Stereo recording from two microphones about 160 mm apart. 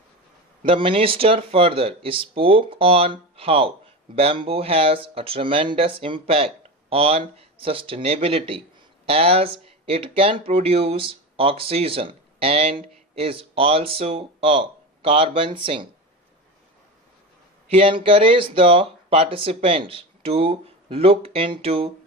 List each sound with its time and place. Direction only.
0.6 s speech: 35° right (ahead or behind)
17.7 s speech: 35° right (ahead or behind)